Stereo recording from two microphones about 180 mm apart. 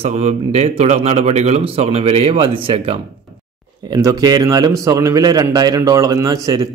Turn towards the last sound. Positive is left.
turn(degrees=-20)  # may be behind; listen again after turning